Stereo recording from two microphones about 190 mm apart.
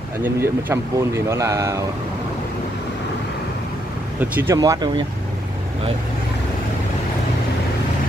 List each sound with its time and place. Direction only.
0.2 s speech: 10° right (ahead or behind)
4.2 s speech: 10° right (ahead or behind)
4.6 s speech: 20° right (ahead or behind)